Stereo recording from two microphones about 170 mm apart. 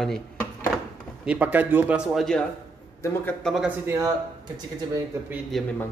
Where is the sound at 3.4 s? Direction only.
Centre (ahead or behind).